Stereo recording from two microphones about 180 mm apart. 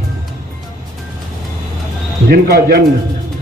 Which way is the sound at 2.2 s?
55° right (ahead or behind).